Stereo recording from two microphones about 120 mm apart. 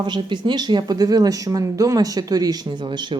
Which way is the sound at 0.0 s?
40° right (ahead or behind).